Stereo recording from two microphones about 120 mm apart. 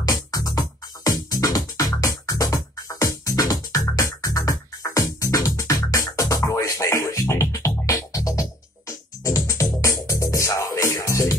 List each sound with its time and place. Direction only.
0.0 s music: 30° left (ahead or behind)